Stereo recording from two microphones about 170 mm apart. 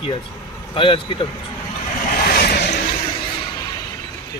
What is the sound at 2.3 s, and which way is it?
Vehicle, 65° left (ahead or behind).